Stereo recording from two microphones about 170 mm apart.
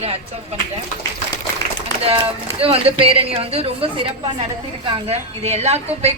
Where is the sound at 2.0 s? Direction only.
35° right (ahead or behind).